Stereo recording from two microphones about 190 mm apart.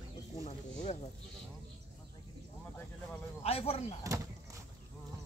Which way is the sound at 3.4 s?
30° left (ahead or behind).